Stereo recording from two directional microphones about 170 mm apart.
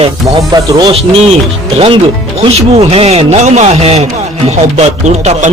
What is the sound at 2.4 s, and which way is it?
Speech, 35° right (ahead or behind).